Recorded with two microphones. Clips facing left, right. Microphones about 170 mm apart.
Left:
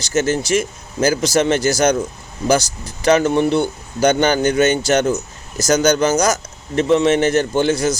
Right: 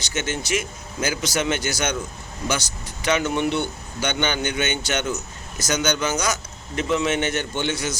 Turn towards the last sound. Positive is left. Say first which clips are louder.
# left 9 dB
turn(degrees=40)  # may be behind; listen again after turning